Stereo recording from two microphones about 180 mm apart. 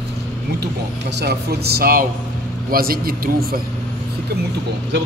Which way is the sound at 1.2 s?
65° right (ahead or behind).